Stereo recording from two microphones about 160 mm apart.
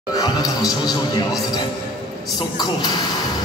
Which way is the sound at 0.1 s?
25° left (ahead or behind).